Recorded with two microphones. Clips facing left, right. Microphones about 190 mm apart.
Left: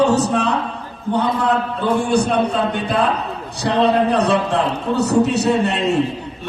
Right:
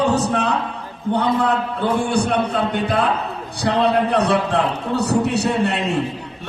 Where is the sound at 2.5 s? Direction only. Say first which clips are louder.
Even; 55° right (ahead or behind).